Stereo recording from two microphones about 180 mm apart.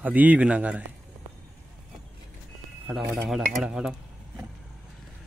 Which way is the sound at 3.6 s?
5° right (ahead or behind).